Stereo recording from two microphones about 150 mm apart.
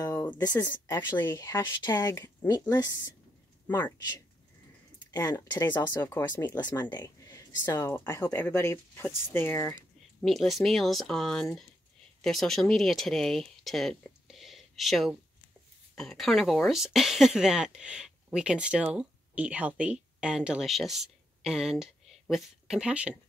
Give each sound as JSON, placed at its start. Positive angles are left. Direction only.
{"t": 0.7, "sound": "speech", "side_deg": 15}
{"t": 3.6, "sound": "speech", "side_deg": 10}
{"t": 5.3, "sound": "speech", "side_deg": 30}
{"t": 5.8, "sound": "speech", "side_deg": 15}
{"t": 10.2, "sound": "speech", "side_deg": 0}